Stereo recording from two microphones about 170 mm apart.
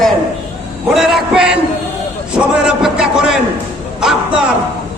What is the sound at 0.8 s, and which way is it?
A man's voice, centre (ahead or behind).